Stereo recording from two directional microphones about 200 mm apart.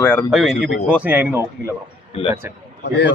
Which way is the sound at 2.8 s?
55° left (ahead or behind).